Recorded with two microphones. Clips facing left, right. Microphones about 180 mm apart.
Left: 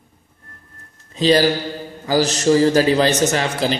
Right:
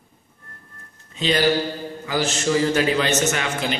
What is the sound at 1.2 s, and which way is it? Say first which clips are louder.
A man's voice: left 4 dB; 35° left (ahead or behind).